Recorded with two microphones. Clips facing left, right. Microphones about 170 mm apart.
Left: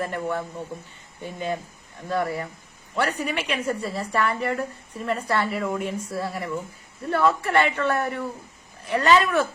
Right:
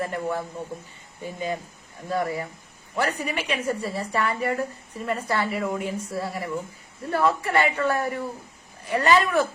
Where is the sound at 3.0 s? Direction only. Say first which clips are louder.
Left 1 dB; 10° right (ahead or behind).